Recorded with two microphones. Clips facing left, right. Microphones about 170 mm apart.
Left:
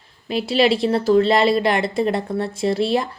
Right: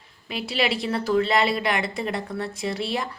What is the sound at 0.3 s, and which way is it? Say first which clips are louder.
A woman's voice: left 8 dB; 30° left (ahead or behind).